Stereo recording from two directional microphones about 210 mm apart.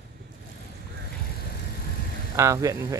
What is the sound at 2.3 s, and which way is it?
Speech, 15° right (ahead or behind).